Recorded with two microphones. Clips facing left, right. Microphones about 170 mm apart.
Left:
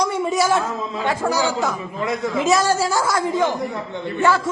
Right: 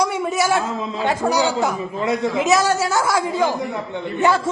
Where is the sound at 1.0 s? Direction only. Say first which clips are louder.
Right 2 dB; 20° right (ahead or behind).